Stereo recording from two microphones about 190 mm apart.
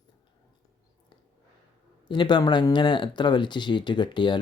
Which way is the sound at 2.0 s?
25° left (ahead or behind).